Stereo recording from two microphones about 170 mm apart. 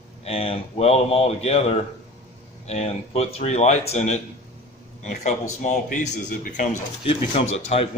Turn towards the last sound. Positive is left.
turn(degrees=35)  # may be behind; listen again after turning